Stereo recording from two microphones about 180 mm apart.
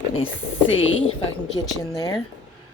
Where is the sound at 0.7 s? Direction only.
90° left.